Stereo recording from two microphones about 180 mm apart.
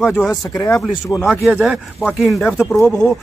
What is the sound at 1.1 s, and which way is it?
Speech, centre (ahead or behind).